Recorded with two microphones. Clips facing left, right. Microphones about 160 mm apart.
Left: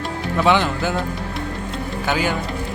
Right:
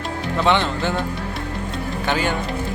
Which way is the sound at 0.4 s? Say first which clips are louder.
Left 1 dB; 5° left (ahead or behind).